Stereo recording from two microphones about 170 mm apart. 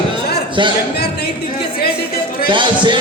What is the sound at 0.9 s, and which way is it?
Speech, 70° left (ahead or behind).